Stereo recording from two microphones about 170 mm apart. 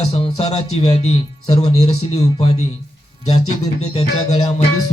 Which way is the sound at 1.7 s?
40° left (ahead or behind).